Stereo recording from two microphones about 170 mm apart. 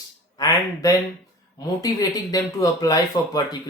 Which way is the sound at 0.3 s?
20° left (ahead or behind).